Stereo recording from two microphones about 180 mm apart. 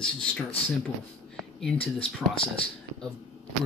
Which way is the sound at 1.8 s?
30° left (ahead or behind).